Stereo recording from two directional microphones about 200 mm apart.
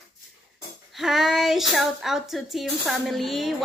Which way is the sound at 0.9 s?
Centre (ahead or behind).